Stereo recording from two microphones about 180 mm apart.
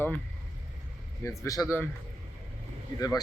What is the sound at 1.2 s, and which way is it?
Speech, 20° left (ahead or behind).